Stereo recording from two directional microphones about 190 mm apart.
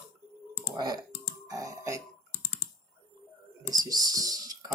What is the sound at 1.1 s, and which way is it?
Burping, 60° left (ahead or behind).